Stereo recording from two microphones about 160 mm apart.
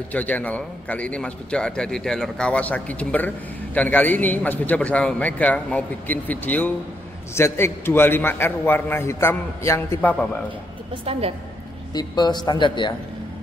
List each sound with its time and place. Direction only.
0.1 s a man's voice: 10° left (ahead or behind)
11.1 s a woman's voice: 35° right (ahead or behind)
11.9 s speech: 25° left (ahead or behind)